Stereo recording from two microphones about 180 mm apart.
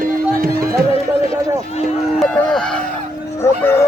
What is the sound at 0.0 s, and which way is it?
Music, 55° right (ahead or behind).